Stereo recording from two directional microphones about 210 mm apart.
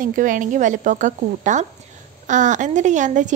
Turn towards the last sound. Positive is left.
turn(degrees=-35)  # may be behind; listen again after turning